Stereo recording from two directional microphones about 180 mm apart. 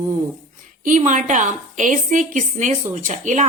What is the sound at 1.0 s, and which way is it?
A woman's voice, 45° right (ahead or behind).